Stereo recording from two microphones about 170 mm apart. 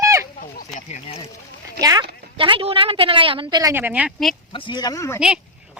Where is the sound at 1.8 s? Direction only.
20° right (ahead or behind).